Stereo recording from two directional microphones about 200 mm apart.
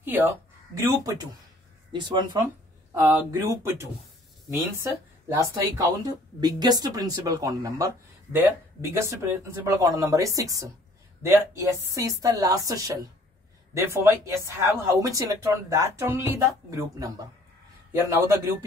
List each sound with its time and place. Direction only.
0.0 s speech: 10° right (ahead or behind)